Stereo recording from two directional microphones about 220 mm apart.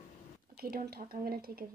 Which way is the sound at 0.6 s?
45° right (ahead or behind).